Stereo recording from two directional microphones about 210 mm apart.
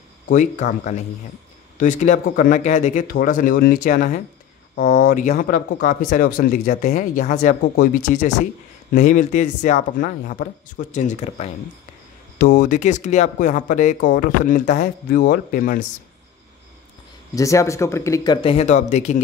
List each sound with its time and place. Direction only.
0.3 s speech: 35° left (ahead or behind)
12.5 s speech: 35° left (ahead or behind)
17.4 s speech: 15° left (ahead or behind); by 19.2 s 35° left (ahead or behind)